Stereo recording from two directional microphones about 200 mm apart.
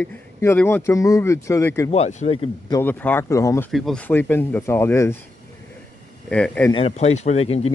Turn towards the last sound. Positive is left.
turn(degrees=30)  # may be behind; listen again after turning